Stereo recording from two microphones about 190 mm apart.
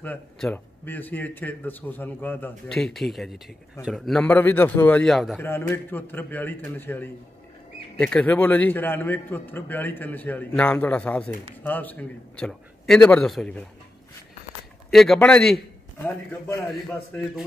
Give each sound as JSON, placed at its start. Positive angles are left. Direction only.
{"t": 0.0, "sound": "a man's voice", "side_deg": 5}
{"t": 5.4, "sound": "a man's voice", "side_deg": 10}
{"t": 14.9, "sound": "a man's voice", "side_deg": 0}